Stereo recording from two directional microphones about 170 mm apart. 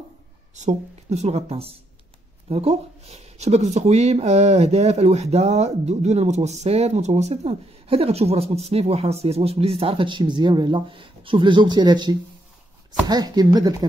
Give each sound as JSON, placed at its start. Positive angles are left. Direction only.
{"t": 0.6, "sound": "speech", "side_deg": -40}